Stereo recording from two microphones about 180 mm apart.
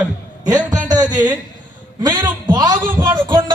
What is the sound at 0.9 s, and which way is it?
Music, 20° right (ahead or behind).